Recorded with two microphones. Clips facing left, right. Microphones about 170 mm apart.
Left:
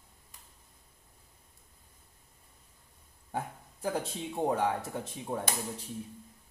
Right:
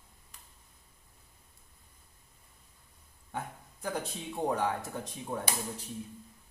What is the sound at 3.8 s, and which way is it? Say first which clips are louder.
Speech: left 3 dB; 30° left (ahead or behind).